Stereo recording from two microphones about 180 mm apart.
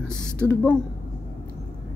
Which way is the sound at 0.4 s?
5° left (ahead or behind).